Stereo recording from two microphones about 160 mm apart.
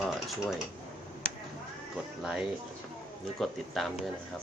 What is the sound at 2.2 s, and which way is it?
Speech, centre (ahead or behind).